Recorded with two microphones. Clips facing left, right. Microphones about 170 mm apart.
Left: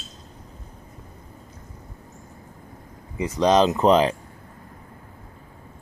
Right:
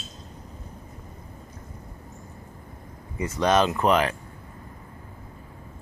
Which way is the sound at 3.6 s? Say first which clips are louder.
Left 4 dB; 25° left (ahead or behind).